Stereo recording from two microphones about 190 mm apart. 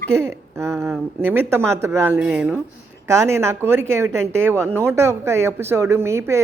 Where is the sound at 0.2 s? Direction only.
15° right (ahead or behind).